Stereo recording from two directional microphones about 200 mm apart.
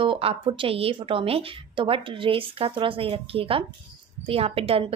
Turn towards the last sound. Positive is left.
turn(degrees=-30)  # may be behind; listen again after turning